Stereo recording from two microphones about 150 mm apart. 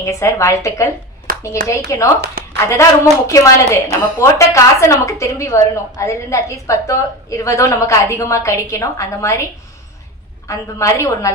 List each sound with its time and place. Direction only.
0.0 s a woman's voice: 20° left (ahead or behind)
1.3 s a sound: 70° right (ahead or behind)
1.9 s a woman's voice: 20° left (ahead or behind)
10.5 s a woman's voice: 20° left (ahead or behind)